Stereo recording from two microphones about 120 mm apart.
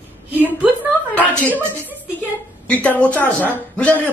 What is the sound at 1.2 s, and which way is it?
Speech, 15° right (ahead or behind).